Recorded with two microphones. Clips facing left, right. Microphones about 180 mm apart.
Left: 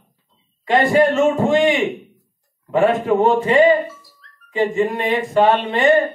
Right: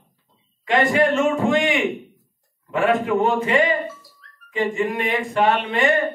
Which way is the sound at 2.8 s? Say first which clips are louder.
Left 3 dB; 35° left (ahead or behind).